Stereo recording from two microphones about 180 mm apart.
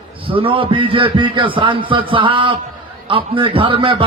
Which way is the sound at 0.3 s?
30° right (ahead or behind).